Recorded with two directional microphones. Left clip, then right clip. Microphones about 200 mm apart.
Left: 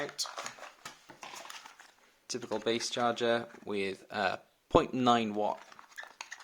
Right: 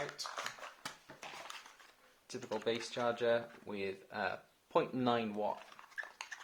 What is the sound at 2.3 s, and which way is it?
Speech, 35° left (ahead or behind).